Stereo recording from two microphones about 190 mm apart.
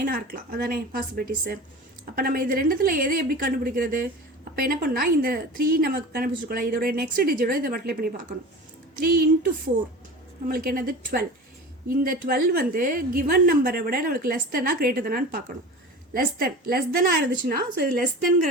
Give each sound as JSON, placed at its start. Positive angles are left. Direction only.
{"t": 0.1, "sound": "a woman's voice", "side_deg": -50}
{"t": 10.5, "sound": "a woman's voice", "side_deg": -50}